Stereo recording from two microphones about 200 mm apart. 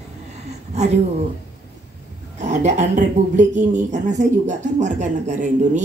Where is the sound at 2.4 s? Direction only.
35° right (ahead or behind).